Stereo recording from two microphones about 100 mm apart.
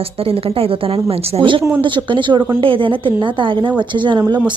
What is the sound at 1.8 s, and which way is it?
A woman's voice, 55° right (ahead or behind).